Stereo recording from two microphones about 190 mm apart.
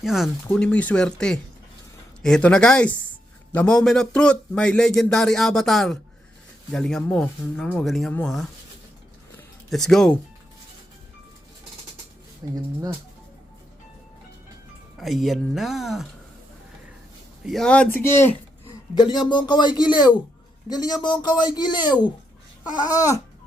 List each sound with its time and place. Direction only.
0.0 s speech: centre (ahead or behind)
9.6 s speech: centre (ahead or behind)
12.4 s speech: 20° right (ahead or behind)
14.9 s speech: centre (ahead or behind)
17.4 s speech: centre (ahead or behind)
18.9 s speech: 25° left (ahead or behind)